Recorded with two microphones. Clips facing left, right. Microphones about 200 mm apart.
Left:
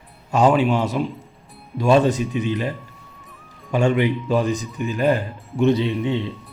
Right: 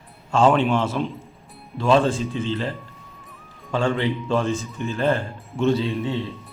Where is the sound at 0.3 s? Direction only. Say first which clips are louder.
Left 1 dB; 20° left (ahead or behind).